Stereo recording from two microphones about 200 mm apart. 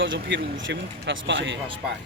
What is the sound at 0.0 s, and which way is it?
Speech, 65° right (ahead or behind).